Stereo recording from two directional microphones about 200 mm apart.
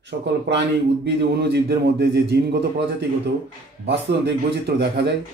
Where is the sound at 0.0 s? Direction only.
60° right (ahead or behind).